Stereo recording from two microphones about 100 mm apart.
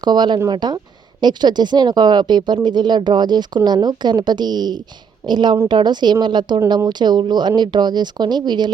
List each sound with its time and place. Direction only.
0.0 s speech: 45° right (ahead or behind)